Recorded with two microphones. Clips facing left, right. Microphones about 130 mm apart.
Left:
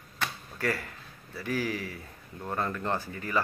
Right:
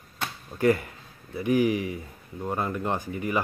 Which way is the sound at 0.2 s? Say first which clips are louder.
Right 7 dB; 20° right (ahead or behind).